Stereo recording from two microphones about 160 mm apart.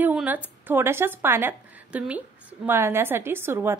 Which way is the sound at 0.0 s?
10° right (ahead or behind).